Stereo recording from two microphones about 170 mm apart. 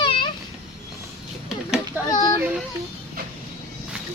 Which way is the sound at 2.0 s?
25° left (ahead or behind).